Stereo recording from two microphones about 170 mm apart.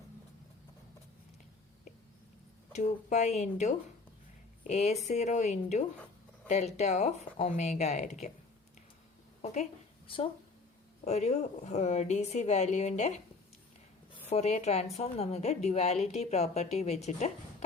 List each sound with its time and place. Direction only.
2.7 s a woman's voice: 40° left (ahead or behind)
9.4 s a woman's voice: 40° left (ahead or behind)
11.0 s speech: 40° left (ahead or behind)
14.3 s a woman's voice: 40° left (ahead or behind)